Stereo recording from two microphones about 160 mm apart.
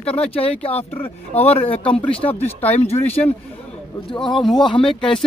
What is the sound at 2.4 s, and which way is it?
Speech, 10° left (ahead or behind).